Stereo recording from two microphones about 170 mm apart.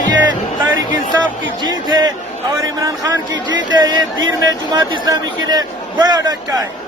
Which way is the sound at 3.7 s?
25° right (ahead or behind).